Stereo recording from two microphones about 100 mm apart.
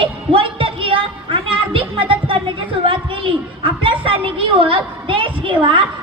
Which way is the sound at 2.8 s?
60° right (ahead or behind).